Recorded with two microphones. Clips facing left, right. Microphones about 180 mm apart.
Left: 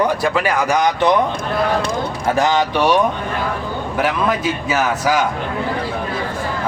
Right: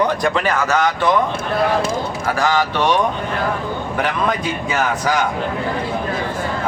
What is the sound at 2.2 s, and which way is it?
Speech, 20° left (ahead or behind).